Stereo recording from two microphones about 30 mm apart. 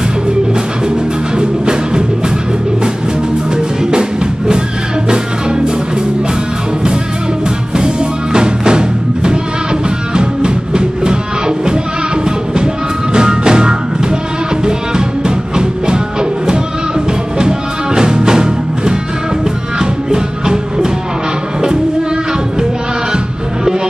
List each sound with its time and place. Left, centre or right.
0.8 s music: right
7.7 s music: right
13.1 s music: right